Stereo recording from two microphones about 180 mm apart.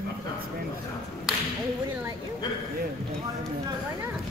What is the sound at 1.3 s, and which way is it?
Clapping, 5° right (ahead or behind).